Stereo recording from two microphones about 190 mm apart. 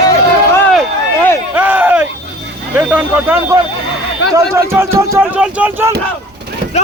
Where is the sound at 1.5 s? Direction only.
10° right (ahead or behind).